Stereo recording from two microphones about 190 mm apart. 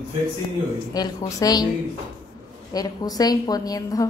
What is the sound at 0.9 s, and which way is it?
Speech, 20° left (ahead or behind).